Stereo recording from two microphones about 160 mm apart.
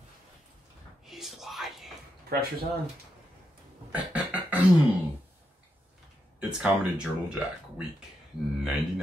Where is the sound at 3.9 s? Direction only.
10° right (ahead or behind).